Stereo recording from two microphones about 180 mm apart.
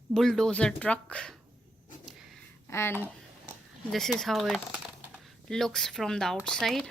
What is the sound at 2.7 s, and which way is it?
Speech, 15° left (ahead or behind).